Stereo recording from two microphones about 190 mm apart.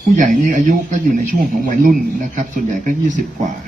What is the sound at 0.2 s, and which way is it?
Speech, 45° right (ahead or behind).